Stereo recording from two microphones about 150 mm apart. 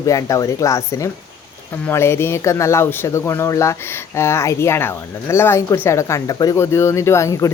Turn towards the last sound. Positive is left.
turn(degrees=20)  # may be behind; listen again after turning